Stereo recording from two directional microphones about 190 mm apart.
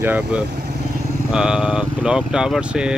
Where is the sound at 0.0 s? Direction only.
10° right (ahead or behind).